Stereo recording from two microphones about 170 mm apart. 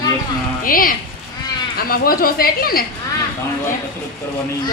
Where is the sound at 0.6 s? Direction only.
55° left (ahead or behind).